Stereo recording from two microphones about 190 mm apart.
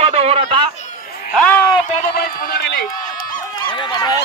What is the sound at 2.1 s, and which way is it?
Speech, 55° left (ahead or behind).